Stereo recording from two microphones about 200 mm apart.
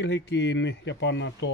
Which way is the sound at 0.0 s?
60° left (ahead or behind).